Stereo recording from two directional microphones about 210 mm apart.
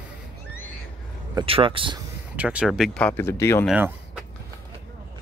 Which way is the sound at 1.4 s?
25° right (ahead or behind).